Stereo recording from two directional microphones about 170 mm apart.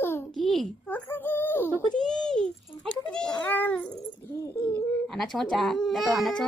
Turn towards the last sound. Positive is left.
turn(degrees=0)  # may be behind; listen again after turning